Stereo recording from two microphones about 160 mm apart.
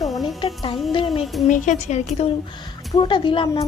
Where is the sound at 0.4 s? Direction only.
35° left (ahead or behind).